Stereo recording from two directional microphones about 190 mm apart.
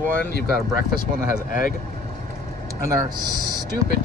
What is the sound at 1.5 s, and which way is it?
Speech, 45° left (ahead or behind).